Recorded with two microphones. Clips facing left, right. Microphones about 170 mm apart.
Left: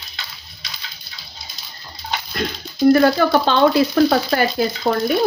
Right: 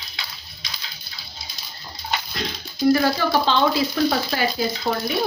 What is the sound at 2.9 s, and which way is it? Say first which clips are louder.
Speech: left 6 dB; 55° left (ahead or behind).